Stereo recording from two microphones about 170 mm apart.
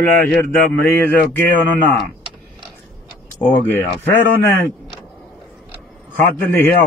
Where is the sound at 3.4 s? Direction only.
10° left (ahead or behind).